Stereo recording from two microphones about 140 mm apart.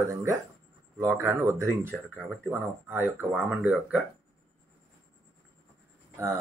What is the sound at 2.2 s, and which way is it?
Speech, 15° right (ahead or behind).